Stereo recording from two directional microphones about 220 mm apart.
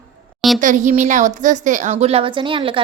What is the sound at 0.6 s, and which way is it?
A woman's voice, 35° right (ahead or behind).